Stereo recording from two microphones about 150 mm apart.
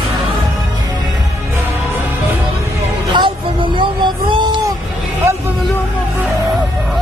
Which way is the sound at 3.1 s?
30° right (ahead or behind).